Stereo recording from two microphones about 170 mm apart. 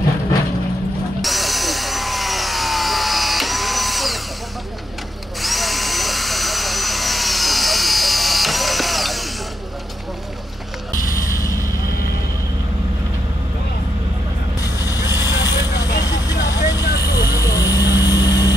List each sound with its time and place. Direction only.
1.2 s tools: centre (ahead or behind)
5.4 s drill: centre (ahead or behind)
11.1 s vehicle: 20° left (ahead or behind)
14.6 s vehicle: 20° left (ahead or behind)
16.8 s vehicle: 65° left (ahead or behind)
17.4 s vehicle: 20° left (ahead or behind)